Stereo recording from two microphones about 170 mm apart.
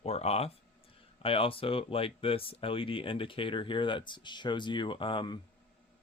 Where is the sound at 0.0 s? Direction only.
40° left (ahead or behind).